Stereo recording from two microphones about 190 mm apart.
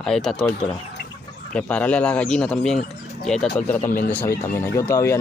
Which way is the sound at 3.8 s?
45° left (ahead or behind).